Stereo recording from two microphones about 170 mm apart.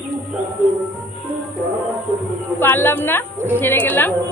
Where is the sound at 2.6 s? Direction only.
10° left (ahead or behind).